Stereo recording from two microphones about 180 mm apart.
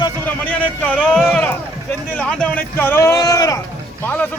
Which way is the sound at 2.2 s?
5° left (ahead or behind).